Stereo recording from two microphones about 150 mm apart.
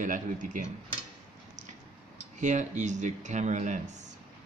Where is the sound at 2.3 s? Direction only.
55° right (ahead or behind).